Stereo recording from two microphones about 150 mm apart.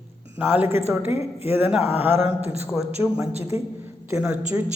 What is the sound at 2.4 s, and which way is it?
Speech, 45° right (ahead or behind).